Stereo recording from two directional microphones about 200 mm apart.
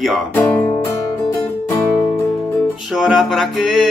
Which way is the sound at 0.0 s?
5° left (ahead or behind).